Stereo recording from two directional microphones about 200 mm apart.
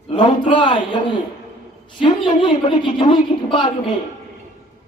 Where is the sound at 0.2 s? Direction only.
25° left (ahead or behind).